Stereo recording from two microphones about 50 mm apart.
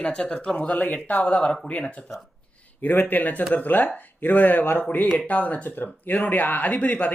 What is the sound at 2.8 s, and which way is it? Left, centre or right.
Speech, left.